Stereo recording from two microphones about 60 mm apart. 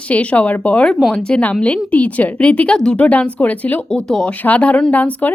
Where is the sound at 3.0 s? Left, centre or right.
Left.